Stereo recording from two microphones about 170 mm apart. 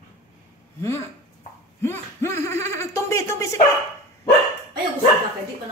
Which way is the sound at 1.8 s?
15° left (ahead or behind).